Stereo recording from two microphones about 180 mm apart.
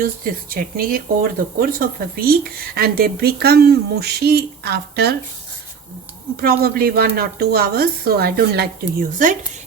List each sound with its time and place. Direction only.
0.0 s a woman's voice: 55° right (ahead or behind)
6.4 s a woman's voice: 55° right (ahead or behind)